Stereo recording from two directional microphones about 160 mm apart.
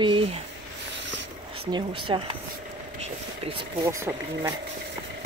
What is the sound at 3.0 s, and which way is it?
Vehicle, 35° right (ahead or behind).